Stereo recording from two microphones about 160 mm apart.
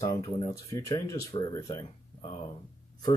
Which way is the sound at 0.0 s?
25° left (ahead or behind).